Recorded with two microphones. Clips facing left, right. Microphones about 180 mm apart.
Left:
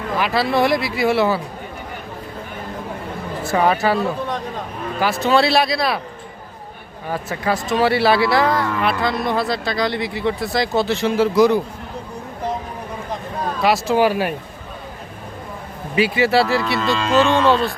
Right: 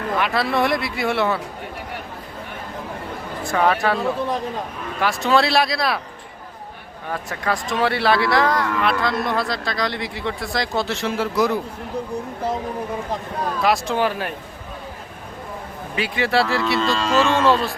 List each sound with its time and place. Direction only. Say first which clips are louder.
0.2 s speech: left 4 dB; centre (ahead or behind)
3.4 s speech: left 2 dB; 5° left (ahead or behind)
7.1 s speech: left 3 dB; 5° left (ahead or behind)
13.6 s speech: left 4 dB; centre (ahead or behind)
16.0 s speech: left 4 dB; 5° left (ahead or behind)